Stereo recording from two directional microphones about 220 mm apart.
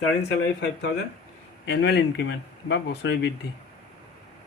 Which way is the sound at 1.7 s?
50° left (ahead or behind).